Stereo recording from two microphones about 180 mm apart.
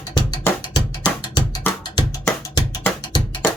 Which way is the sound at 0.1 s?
20° left (ahead or behind).